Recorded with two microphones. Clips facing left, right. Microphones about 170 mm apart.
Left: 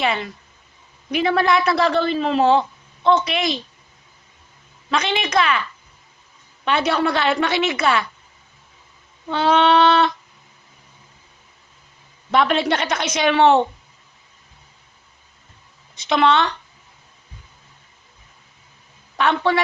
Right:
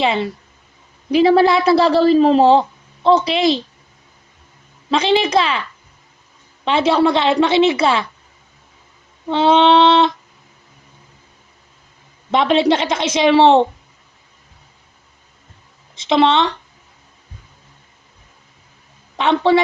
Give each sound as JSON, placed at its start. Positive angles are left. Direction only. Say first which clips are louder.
{"t": 0.0, "sound": "a woman's voice", "louder": "right 5 dB", "side_deg": -25}
{"t": 4.9, "sound": "a woman's voice", "louder": "right 7 dB", "side_deg": -30}
{"t": 6.7, "sound": "a woman's voice", "louder": "right 5 dB", "side_deg": -25}
{"t": 9.3, "sound": "a woman's voice", "louder": "right 4 dB", "side_deg": -25}
{"t": 12.3, "sound": "a woman's voice", "louder": "right 4 dB", "side_deg": -25}
{"t": 16.0, "sound": "a woman's voice", "louder": "right 3 dB", "side_deg": -25}
{"t": 19.1, "sound": "a woman's voice", "louder": "right 5 dB", "side_deg": -25}